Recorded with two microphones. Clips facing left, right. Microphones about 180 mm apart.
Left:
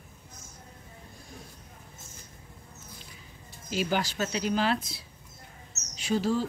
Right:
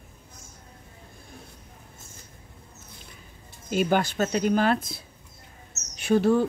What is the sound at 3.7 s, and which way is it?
Speech, 55° right (ahead or behind).